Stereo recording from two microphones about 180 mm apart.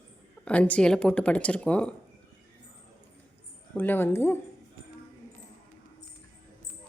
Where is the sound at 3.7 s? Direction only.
10° left (ahead or behind).